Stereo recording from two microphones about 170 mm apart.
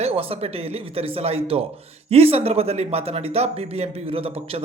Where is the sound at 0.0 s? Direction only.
35° right (ahead or behind).